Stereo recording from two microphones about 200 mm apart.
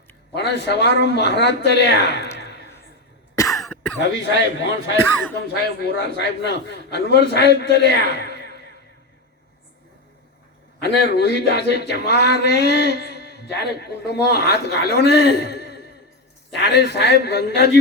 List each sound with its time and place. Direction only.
0.3 s speech: 60° left (ahead or behind)
2.4 s a sound: 60° left (ahead or behind)
3.3 s cough: 15° left (ahead or behind)
4.0 s speech: 60° left (ahead or behind)
5.8 s speech: 60° left (ahead or behind)
10.8 s speech: 55° left (ahead or behind)